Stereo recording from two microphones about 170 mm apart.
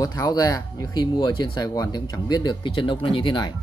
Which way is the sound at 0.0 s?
20° left (ahead or behind).